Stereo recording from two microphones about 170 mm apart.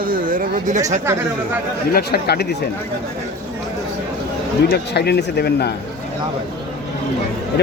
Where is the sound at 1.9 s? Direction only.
65° left (ahead or behind).